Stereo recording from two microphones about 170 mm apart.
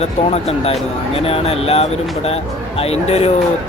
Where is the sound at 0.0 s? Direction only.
40° left (ahead or behind).